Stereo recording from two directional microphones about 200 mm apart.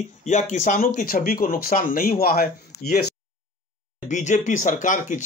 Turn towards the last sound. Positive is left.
turn(degrees=40)  # may be behind; listen again after turning